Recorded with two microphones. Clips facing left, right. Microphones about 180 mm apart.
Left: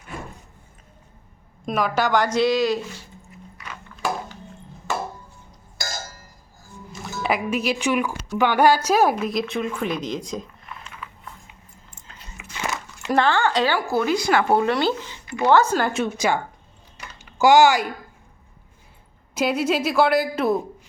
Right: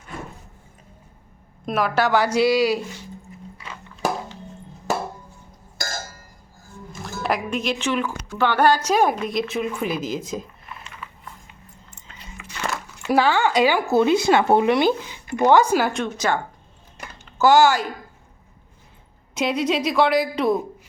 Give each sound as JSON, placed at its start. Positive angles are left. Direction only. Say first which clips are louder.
{"t": 1.6, "sound": "speech", "louder": "right 1 dB", "side_deg": 0}
{"t": 3.6, "sound": "a sound", "louder": "left 1 dB", "side_deg": -30}
{"t": 5.7, "sound": "a sound", "louder": "right 1 dB", "side_deg": -50}
{"t": 7.2, "sound": "a woman's voice", "louder": "left 1 dB", "side_deg": 0}
{"t": 12.4, "sound": "speech", "louder": "right 1 dB", "side_deg": 0}
{"t": 15.9, "sound": "speech", "louder": "left 1 dB", "side_deg": 5}
{"t": 19.3, "sound": "a woman's voice", "louder": "even", "side_deg": 5}